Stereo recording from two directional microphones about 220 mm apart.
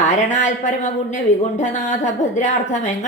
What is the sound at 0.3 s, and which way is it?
A woman's voice, 30° left (ahead or behind).